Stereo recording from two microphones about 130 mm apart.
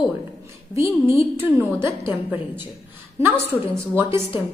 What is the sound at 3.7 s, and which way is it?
Speech, 20° right (ahead or behind).